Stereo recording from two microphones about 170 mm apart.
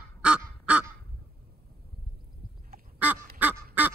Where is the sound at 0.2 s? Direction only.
5° right (ahead or behind).